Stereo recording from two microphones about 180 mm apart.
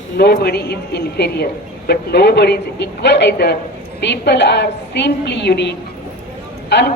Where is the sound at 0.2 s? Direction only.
60° left (ahead or behind).